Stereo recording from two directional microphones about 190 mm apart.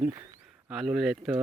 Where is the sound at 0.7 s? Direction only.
Centre (ahead or behind).